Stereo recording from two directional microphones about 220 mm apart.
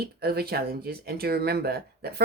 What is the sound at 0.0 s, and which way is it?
Speech, 45° right (ahead or behind).